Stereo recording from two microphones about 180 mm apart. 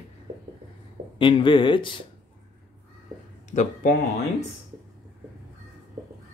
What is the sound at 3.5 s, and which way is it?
Speech, 45° left (ahead or behind).